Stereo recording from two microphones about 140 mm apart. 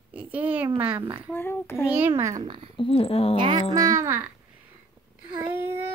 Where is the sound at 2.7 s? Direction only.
40° left (ahead or behind).